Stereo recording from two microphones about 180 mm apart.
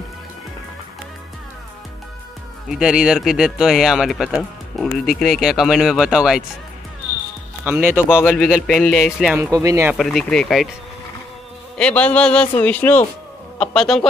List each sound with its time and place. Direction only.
2.7 s speech: 5° right (ahead or behind)
7.6 s speech: 10° right (ahead or behind)
8.1 s a man's voice: 15° left (ahead or behind)
8.4 s speech: centre (ahead or behind)
9.4 s speech: 15° right (ahead or behind)
9.9 s speech: centre (ahead or behind)
11.8 s a man's voice: 5° left (ahead or behind)